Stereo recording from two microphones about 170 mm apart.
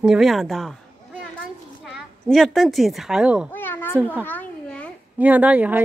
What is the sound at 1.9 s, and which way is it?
A woman's voice, centre (ahead or behind).